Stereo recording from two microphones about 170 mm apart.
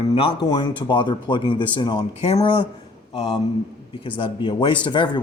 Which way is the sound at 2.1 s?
40° left (ahead or behind).